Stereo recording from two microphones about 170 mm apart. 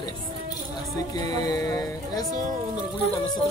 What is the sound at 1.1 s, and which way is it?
Speech, 20° left (ahead or behind).